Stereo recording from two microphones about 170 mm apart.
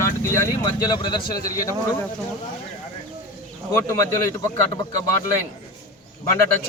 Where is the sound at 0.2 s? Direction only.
15° left (ahead or behind).